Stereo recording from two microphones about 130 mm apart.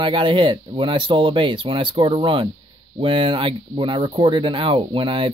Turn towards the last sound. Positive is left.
turn(degrees=-40)  # may be behind; listen again after turning